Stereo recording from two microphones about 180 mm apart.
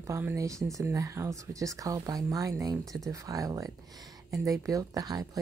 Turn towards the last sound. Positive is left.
turn(degrees=-20)  # may be behind; listen again after turning